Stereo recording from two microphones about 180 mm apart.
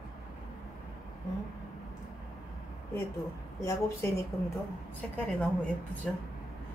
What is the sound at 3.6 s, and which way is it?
Speech, 15° left (ahead or behind).